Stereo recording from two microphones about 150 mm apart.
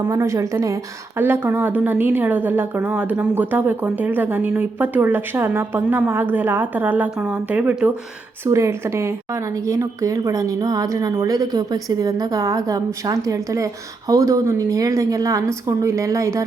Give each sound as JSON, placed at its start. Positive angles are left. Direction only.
{"t": 0.0, "sound": "a woman's voice", "side_deg": -20}